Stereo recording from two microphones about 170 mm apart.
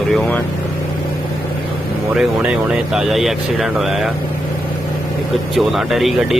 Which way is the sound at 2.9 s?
Centre (ahead or behind).